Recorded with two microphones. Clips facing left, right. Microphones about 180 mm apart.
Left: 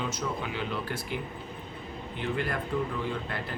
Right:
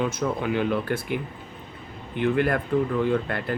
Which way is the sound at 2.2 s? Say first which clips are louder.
Right 9 dB; 55° right (ahead or behind).